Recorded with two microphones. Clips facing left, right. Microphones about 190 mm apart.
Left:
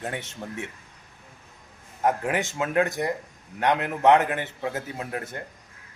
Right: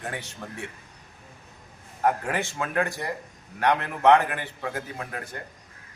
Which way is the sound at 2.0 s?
20° left (ahead or behind).